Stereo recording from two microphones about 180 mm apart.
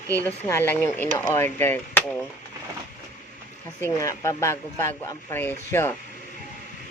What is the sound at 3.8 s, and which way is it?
Speech, 20° left (ahead or behind).